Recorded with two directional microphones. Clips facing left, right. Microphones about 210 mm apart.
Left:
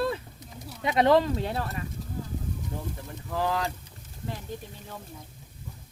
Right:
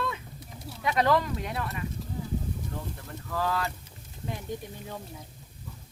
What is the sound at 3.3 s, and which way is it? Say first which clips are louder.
Speech: left 2 dB; 15° left (ahead or behind).